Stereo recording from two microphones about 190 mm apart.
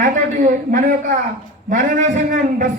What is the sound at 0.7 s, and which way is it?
Speech, 45° right (ahead or behind).